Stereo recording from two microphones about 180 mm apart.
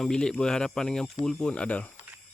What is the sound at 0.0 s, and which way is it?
Speech, 5° left (ahead or behind).